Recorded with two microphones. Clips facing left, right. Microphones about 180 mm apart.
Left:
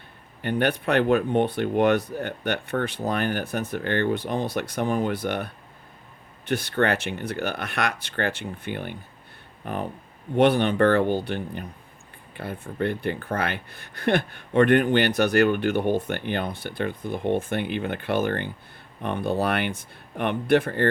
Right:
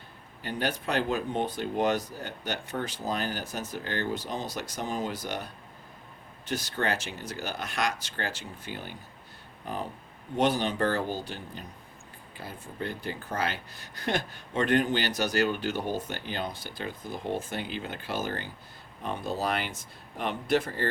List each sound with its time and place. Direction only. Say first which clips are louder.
0.4 s speech: left 7 dB; 60° left (ahead or behind)